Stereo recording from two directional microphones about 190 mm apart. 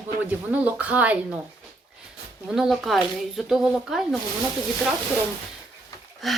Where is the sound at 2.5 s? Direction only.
Centre (ahead or behind).